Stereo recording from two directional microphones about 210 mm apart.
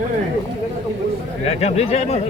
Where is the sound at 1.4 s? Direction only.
30° left (ahead or behind).